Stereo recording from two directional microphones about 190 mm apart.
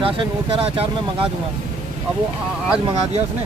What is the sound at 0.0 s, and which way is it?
Speech, 30° right (ahead or behind).